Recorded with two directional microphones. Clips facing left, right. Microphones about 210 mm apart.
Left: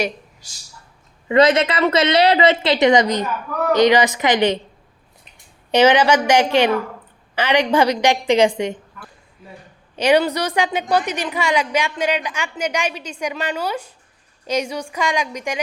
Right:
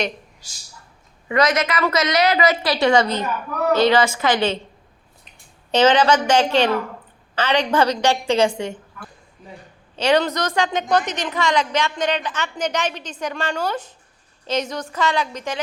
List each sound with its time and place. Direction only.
1.3 s a woman's voice: 30° left (ahead or behind)
5.7 s a woman's voice: 10° left (ahead or behind)
9.9 s a woman's voice: 15° left (ahead or behind)